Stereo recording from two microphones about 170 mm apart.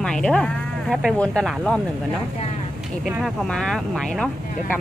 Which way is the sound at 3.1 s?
5° right (ahead or behind).